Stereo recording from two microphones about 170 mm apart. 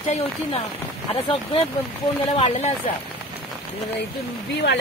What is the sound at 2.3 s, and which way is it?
Speech, 35° left (ahead or behind).